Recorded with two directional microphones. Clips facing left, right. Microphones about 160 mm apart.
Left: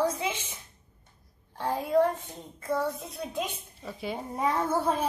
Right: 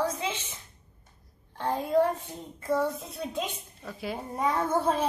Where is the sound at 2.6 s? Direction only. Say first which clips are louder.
Right 2 dB; centre (ahead or behind).